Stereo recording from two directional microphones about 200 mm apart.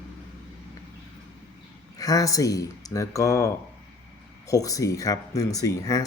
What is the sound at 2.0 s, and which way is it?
Speech, 15° left (ahead or behind).